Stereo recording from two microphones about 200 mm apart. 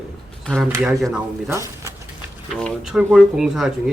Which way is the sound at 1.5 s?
15° right (ahead or behind).